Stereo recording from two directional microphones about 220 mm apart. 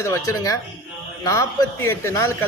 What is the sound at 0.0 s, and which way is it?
A man's voice, 15° left (ahead or behind).